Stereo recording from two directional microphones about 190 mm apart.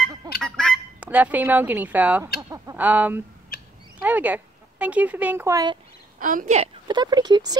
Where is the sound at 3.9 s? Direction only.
10° right (ahead or behind).